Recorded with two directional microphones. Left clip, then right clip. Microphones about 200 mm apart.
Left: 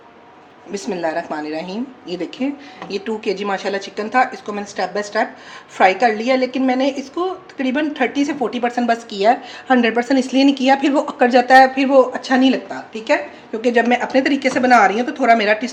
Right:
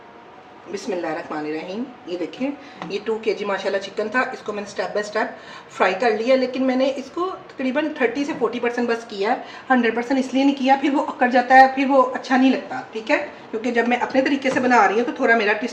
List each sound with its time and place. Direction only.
1.5 s a woman's voice: 55° left (ahead or behind)